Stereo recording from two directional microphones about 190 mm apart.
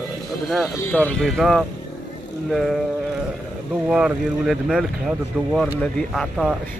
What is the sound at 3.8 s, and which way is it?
Speech, 5° right (ahead or behind).